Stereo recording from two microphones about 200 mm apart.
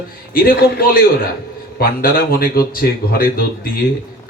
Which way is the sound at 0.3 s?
45° left (ahead or behind).